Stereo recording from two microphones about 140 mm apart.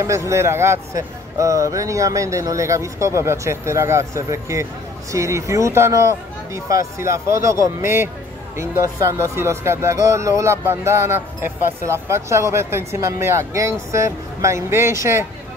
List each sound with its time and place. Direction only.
0.0 s speech: 20° right (ahead or behind)